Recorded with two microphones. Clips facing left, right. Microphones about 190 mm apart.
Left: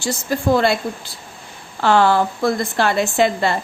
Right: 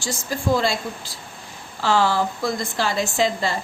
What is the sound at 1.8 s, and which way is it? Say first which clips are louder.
A woman's voice: left 5 dB; 60° left (ahead or behind).